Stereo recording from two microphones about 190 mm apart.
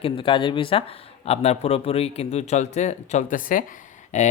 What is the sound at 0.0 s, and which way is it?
Speech, 30° left (ahead or behind).